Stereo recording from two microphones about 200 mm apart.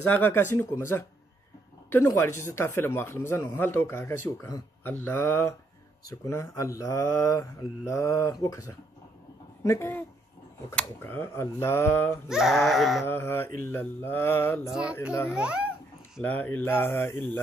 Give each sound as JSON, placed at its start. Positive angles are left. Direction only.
{"t": 0.1, "sound": "speech", "side_deg": 10}
{"t": 12.3, "sound": "speech", "side_deg": 0}
{"t": 13.0, "sound": "speech", "side_deg": 10}
{"t": 14.7, "sound": "speech", "side_deg": -5}
{"t": 16.2, "sound": "speech", "side_deg": 10}